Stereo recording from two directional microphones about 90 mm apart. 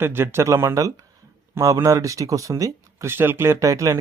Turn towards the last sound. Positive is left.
turn(degrees=-35)  # may be behind; listen again after turning